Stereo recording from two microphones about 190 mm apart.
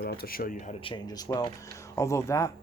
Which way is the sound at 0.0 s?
55° left (ahead or behind).